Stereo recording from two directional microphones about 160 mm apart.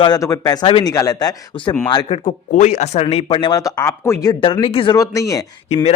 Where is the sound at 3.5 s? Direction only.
20° left (ahead or behind).